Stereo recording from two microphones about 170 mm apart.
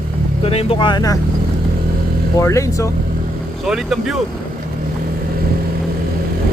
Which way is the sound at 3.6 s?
Centre (ahead or behind).